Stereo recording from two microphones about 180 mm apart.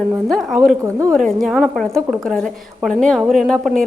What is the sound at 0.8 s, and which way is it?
Speech, 15° right (ahead or behind).